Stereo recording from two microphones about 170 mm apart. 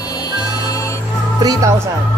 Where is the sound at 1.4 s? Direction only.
20° right (ahead or behind).